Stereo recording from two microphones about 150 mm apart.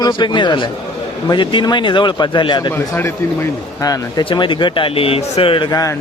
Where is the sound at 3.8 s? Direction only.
25° left (ahead or behind).